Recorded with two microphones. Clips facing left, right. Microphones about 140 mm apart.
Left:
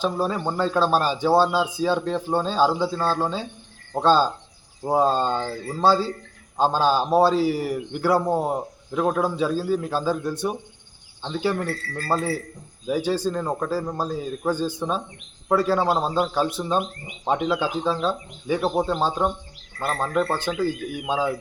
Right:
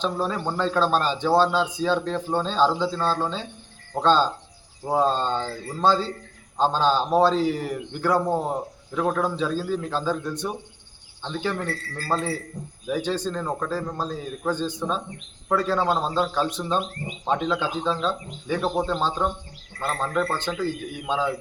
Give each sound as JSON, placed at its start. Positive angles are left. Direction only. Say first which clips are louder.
{"t": 0.0, "sound": "a man's voice", "louder": "left 2 dB", "side_deg": 10}